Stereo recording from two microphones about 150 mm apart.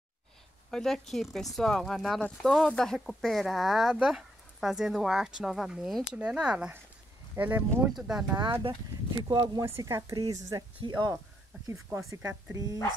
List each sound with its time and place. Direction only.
0.7 s speech: 5° left (ahead or behind)
9.3 s speech: 30° right (ahead or behind)